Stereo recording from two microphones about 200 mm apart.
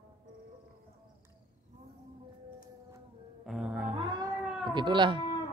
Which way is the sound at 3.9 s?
25° right (ahead or behind).